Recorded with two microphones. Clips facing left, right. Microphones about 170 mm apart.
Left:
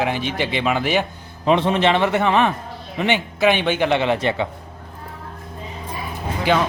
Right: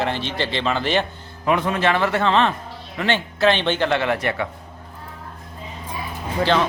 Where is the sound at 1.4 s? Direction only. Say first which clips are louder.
Left 3 dB; 25° left (ahead or behind).